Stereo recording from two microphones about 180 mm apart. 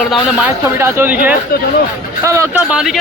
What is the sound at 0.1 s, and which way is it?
Speech, 5° right (ahead or behind).